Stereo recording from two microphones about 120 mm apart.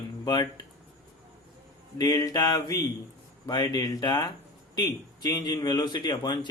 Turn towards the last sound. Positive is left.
turn(degrees=35)  # may be behind; listen again after turning